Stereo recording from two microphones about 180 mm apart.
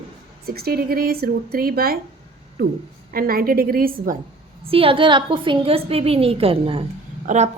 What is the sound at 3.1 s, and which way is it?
Speech, 55° right (ahead or behind).